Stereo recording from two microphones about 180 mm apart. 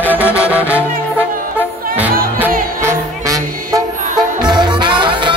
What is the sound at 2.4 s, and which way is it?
Music, 15° right (ahead or behind).